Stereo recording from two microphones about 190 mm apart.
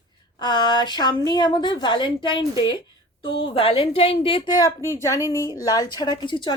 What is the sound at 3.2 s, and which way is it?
Speech, 80° left.